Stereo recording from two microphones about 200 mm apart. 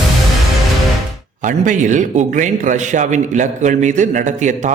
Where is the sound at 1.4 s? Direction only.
40° right (ahead or behind).